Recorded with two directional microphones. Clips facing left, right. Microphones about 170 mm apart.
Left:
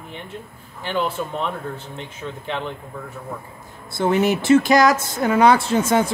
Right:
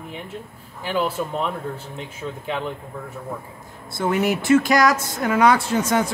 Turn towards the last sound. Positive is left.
turn(degrees=25)  # may be behind; listen again after turning